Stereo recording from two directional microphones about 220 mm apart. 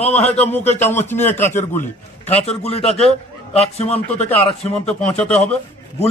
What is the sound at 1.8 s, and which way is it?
Speech, 30° left (ahead or behind).